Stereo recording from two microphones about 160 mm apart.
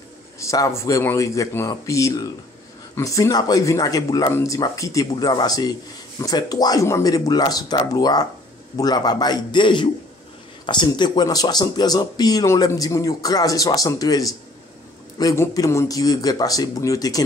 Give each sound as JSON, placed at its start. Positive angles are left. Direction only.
{"t": 0.4, "sound": "speech", "side_deg": 20}